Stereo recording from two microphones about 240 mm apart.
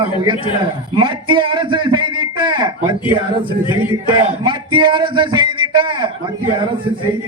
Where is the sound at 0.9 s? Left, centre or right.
Centre.